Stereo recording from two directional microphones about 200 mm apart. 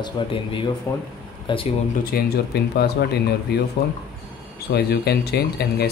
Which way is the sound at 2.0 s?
50° left (ahead or behind).